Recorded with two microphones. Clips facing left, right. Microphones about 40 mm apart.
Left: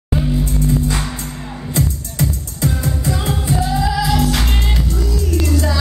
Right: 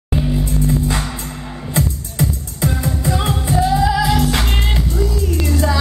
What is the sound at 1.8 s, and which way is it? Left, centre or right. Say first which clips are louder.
Music: even; centre.